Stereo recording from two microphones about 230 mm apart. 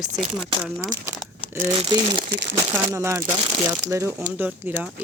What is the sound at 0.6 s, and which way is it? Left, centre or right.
Speech, centre.